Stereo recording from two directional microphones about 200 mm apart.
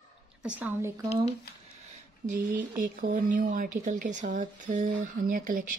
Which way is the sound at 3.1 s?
45° right (ahead or behind).